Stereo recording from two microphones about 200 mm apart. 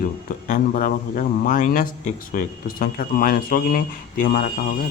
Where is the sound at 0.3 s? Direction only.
40° left (ahead or behind).